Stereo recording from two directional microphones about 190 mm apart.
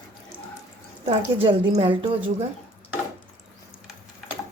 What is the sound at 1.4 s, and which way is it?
Speech, 30° right (ahead or behind).